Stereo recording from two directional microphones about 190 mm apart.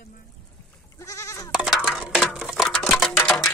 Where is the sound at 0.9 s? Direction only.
15° left (ahead or behind).